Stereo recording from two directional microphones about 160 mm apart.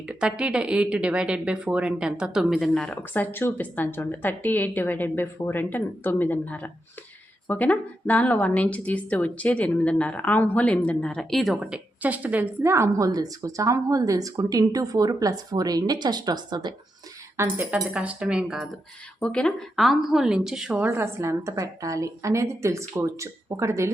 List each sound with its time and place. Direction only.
0.1 s a woman's voice: 5° right (ahead or behind); by 16.7 s 25° right (ahead or behind)
17.3 s a woman's voice: 10° right (ahead or behind)
19.2 s a woman's voice: 5° left (ahead or behind); by 23.9 s 20° right (ahead or behind)